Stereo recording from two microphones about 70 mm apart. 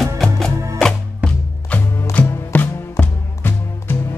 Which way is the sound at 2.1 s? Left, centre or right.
Left.